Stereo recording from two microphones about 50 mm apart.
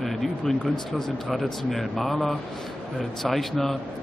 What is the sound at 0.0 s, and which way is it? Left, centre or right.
Speech, centre.